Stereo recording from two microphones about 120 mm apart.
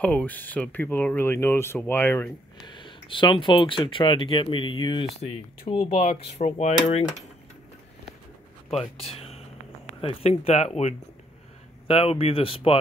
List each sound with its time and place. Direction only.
0.0 s speech: 10° left (ahead or behind)
2.6 s speech: 40° left (ahead or behind)
5.1 s cutlery: 55° left (ahead or behind)
6.1 s cutlery: 65° left (ahead or behind)
8.7 s speech: 55° left (ahead or behind)
10.0 s cutlery: 55° left (ahead or behind)
11.9 s speech: 55° left (ahead or behind)